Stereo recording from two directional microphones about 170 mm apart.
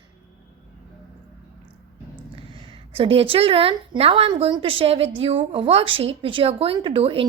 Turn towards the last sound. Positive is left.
turn(degrees=-35)  # may be behind; listen again after turning